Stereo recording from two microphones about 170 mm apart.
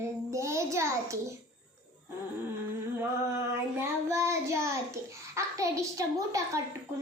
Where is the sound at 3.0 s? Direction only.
15° right (ahead or behind).